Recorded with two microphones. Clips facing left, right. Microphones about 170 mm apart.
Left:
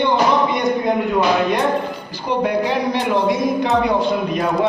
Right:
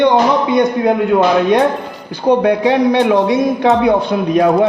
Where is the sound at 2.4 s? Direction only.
70° right (ahead or behind).